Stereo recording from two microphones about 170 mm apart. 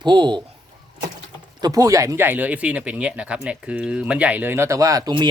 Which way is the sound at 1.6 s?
20° right (ahead or behind).